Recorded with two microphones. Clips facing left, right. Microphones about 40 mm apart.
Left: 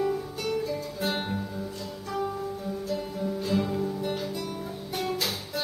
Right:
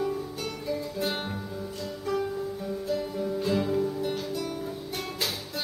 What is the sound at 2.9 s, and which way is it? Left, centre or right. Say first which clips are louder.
Guitar: right 2 dB; centre.